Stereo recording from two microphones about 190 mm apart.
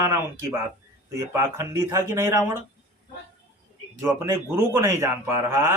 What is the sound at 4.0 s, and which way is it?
Speech, 15° right (ahead or behind).